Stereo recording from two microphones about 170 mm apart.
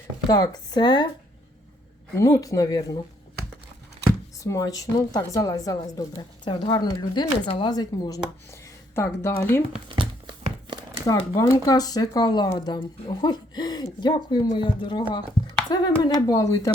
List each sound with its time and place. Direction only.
0.3 s a woman's voice: 25° left (ahead or behind)
2.1 s a woman's voice: 20° left (ahead or behind)
4.4 s a woman's voice: 20° left (ahead or behind)
9.9 s a sound: 30° right (ahead or behind)
11.3 s a woman's voice: 20° left (ahead or behind)